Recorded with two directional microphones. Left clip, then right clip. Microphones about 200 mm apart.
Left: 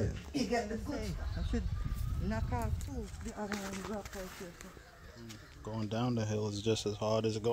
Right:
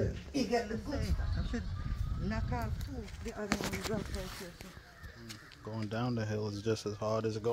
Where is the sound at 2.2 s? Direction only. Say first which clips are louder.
Even; 25° left (ahead or behind).